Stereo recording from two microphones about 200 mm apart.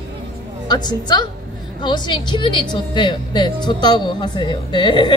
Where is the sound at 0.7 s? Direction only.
20° left (ahead or behind).